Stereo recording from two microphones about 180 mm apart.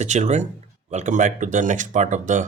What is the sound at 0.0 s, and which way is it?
Speech, 40° right (ahead or behind).